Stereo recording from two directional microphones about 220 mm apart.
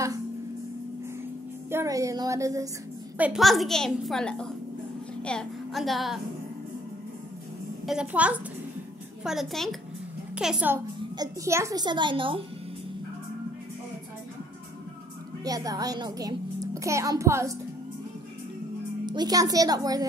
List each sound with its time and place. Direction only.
1.7 s a child's voice: 15° right (ahead or behind)
3.2 s a woman's voice: 5° right (ahead or behind)
7.8 s a woman's voice: 5° right (ahead or behind)
11.0 s a child's voice: 15° right (ahead or behind)
15.4 s a child's voice: 15° right (ahead or behind)
19.0 s a child's voice: 20° right (ahead or behind)